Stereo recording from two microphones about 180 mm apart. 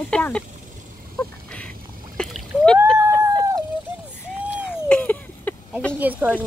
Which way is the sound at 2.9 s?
15° right (ahead or behind).